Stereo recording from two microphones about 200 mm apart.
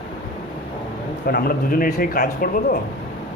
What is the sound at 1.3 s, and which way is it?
Speech, 45° left (ahead or behind).